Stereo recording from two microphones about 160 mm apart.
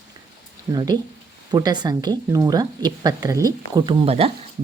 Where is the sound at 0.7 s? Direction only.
25° right (ahead or behind).